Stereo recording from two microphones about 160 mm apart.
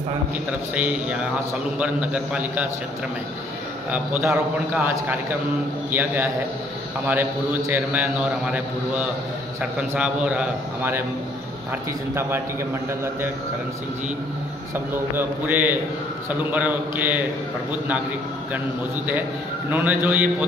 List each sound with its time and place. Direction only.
0.5 s a man's voice: 10° right (ahead or behind)
3.9 s a man's voice: 15° right (ahead or behind)
15.1 s a man's voice: 15° right (ahead or behind)
19.7 s a man's voice: 15° right (ahead or behind)